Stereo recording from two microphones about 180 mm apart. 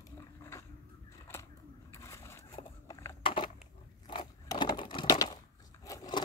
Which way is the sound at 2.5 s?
25° left (ahead or behind).